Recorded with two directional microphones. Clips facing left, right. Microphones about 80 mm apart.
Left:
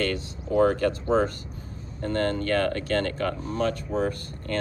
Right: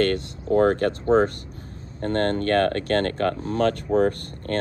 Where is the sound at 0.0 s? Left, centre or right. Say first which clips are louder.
Right 6 dB; right.